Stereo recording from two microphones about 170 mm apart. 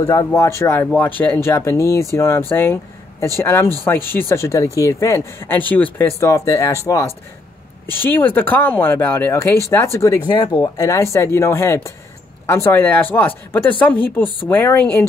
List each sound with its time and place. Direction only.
0.0 s speech: 20° left (ahead or behind)